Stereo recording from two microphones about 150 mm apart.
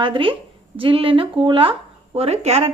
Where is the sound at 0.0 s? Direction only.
35° right (ahead or behind).